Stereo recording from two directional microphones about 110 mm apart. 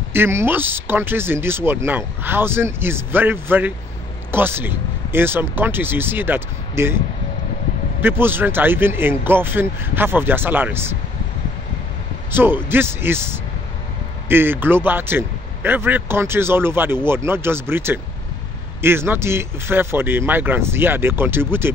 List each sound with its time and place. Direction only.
0.1 s a man's voice: 20° right (ahead or behind)
8.0 s a man's voice: 20° right (ahead or behind)
12.3 s a man's voice: 20° right (ahead or behind)